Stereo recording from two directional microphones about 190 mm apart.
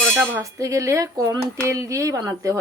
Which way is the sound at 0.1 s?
10° right (ahead or behind).